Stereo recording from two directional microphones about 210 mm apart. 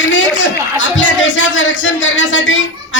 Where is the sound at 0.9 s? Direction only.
60° left (ahead or behind).